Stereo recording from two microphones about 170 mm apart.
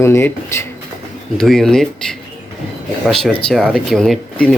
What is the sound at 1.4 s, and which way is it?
Speech, centre (ahead or behind).